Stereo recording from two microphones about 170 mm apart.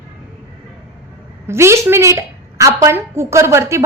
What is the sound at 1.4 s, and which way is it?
A woman's voice, 15° right (ahead or behind).